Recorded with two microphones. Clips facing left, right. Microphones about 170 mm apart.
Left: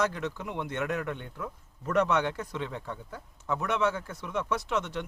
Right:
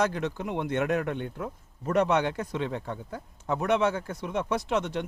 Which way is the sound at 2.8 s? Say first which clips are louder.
Right 4 dB; 40° right (ahead or behind).